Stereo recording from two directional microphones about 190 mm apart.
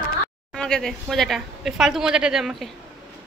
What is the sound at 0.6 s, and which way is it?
A woman's voice, 5° left (ahead or behind).